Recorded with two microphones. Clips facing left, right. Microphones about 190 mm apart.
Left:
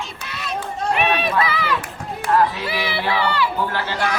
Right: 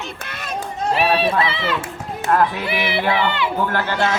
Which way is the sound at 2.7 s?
20° right (ahead or behind).